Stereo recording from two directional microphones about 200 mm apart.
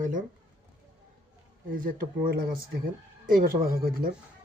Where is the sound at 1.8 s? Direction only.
45° right (ahead or behind).